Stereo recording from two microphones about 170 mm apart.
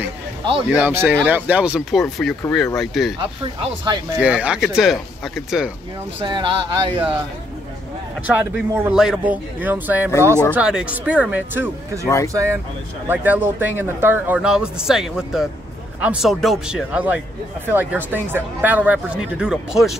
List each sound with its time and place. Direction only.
0.7 s speech: 10° right (ahead or behind)
3.9 s speech: 25° right (ahead or behind)
4.2 s speech: 5° right (ahead or behind)
6.2 s speech: 30° right (ahead or behind)
8.4 s speech: 10° right (ahead or behind)